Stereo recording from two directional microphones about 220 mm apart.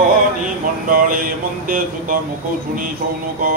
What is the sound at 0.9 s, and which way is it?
Speech, 40° right (ahead or behind).